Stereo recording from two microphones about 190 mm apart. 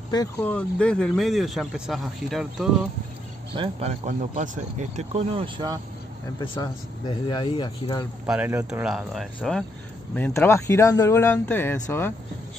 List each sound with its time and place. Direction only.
0.1 s speech: 15° left (ahead or behind); by 2.9 s centre (ahead or behind)
3.5 s speech: 25° right (ahead or behind)
4.0 s speech: 40° right (ahead or behind)
6.5 s speech: 20° left (ahead or behind)
8.3 s speech: 10° right (ahead or behind); by 11.8 s 10° left (ahead or behind)